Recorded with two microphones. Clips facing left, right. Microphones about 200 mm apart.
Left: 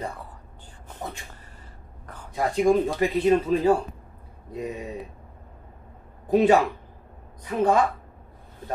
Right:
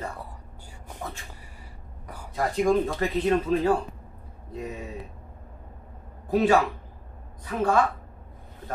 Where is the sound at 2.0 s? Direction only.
10° right (ahead or behind).